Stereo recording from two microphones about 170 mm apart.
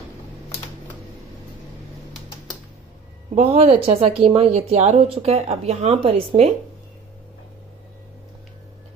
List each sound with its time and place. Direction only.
3.3 s speech: 35° right (ahead or behind)